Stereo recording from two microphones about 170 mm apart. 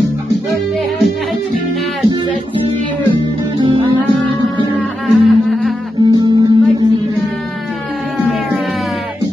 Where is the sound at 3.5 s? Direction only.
30° right (ahead or behind).